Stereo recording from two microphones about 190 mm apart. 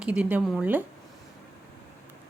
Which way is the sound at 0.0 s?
5° right (ahead or behind).